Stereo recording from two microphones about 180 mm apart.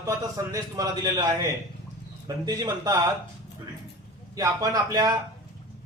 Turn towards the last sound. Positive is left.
turn(degrees=-20)  # may be behind; listen again after turning